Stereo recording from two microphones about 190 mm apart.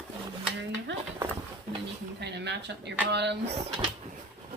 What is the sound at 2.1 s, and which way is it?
Speech, 65° right (ahead or behind).